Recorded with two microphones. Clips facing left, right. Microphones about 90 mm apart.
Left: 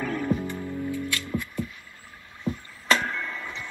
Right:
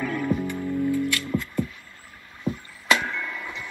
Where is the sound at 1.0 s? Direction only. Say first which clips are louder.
Right 4 dB; 25° left (ahead or behind).